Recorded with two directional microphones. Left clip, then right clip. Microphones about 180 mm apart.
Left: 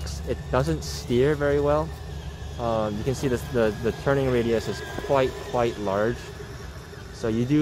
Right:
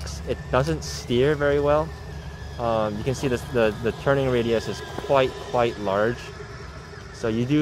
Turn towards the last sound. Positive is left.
turn(degrees=0)  # may be behind; listen again after turning